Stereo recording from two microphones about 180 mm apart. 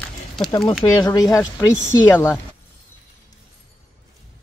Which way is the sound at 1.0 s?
20° left (ahead or behind).